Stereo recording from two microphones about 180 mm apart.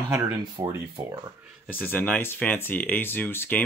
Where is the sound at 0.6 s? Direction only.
25° right (ahead or behind).